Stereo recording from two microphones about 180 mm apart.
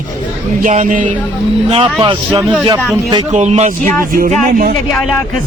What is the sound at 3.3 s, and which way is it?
Speech, 40° right (ahead or behind).